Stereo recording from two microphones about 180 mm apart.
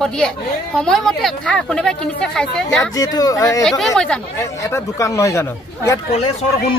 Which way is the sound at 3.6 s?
Centre (ahead or behind).